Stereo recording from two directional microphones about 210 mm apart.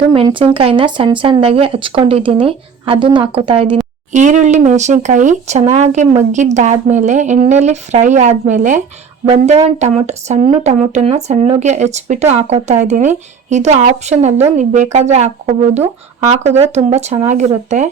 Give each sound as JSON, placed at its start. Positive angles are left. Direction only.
{"t": 0.1, "sound": "speech", "side_deg": -25}
{"t": 4.1, "sound": "speech", "side_deg": -35}